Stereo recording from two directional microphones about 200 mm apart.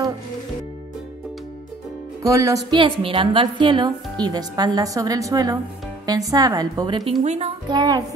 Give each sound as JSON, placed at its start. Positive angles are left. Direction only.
{"t": 2.2, "sound": "a woman's voice", "side_deg": -15}
{"t": 7.2, "sound": "speech", "side_deg": -30}